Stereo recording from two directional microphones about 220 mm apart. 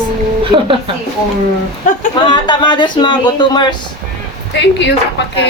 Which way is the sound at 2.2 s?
20° left (ahead or behind).